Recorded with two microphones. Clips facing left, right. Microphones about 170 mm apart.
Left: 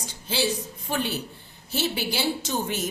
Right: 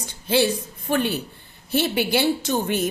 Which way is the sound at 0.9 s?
55° right (ahead or behind).